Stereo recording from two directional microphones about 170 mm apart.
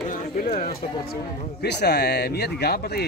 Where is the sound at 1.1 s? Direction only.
75° left (ahead or behind).